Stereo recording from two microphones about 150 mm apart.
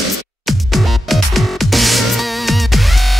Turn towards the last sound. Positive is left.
turn(degrees=0)  # may be behind; listen again after turning